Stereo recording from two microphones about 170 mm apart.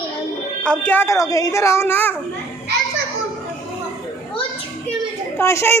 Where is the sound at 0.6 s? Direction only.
5° left (ahead or behind).